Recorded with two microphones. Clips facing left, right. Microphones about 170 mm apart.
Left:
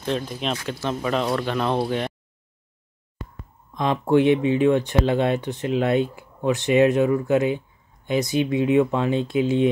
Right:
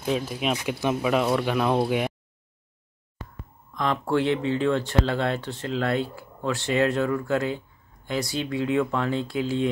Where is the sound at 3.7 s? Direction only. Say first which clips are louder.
Left 5 dB; 20° left (ahead or behind).